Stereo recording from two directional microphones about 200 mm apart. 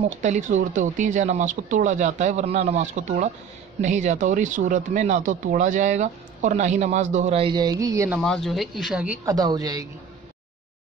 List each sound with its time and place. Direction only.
0.2 s speech: 35° right (ahead or behind); by 8.2 s 15° right (ahead or behind)
8.2 s speech: 5° left (ahead or behind)
9.2 s a woman's voice: 20° right (ahead or behind)